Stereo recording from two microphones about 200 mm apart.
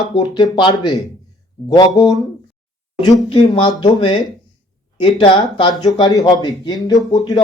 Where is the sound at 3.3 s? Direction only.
25° left (ahead or behind).